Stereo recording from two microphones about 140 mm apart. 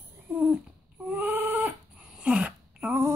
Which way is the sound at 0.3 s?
10° right (ahead or behind).